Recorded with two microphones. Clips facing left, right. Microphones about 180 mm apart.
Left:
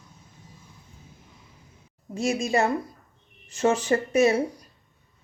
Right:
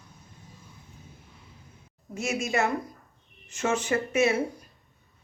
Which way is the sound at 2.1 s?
30° left (ahead or behind).